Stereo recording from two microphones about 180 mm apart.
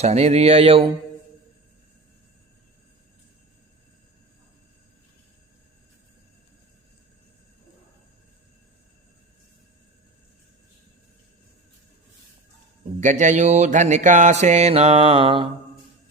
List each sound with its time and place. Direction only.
0.0 s mantra: 35° right (ahead or behind)
13.0 s mantra: 45° right (ahead or behind)